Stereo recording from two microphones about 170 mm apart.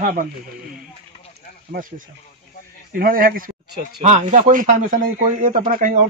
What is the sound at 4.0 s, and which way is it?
Speech, 45° right (ahead or behind).